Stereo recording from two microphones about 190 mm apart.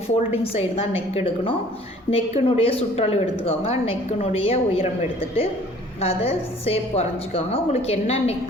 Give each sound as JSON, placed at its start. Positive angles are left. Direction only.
{"t": 0.4, "sound": "a woman's voice", "side_deg": 30}